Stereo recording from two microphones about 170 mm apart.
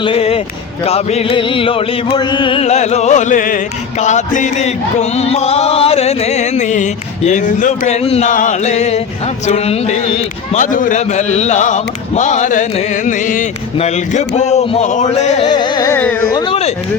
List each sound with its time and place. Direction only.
0.0 s a sound: 35° left (ahead or behind)
0.9 s music: 40° left (ahead or behind)
8.3 s music: 50° left (ahead or behind)
10.5 s a man's voice: 50° left (ahead or behind)
13.7 s music: 40° left (ahead or behind)
15.4 s music: 25° left (ahead or behind)
16.0 s speech: 10° left (ahead or behind)
16.3 s speech: 25° left (ahead or behind)